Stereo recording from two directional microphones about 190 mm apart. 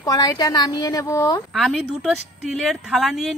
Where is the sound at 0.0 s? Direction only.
20° left (ahead or behind).